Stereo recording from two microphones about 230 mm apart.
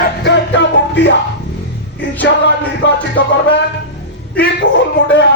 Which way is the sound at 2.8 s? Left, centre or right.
Left.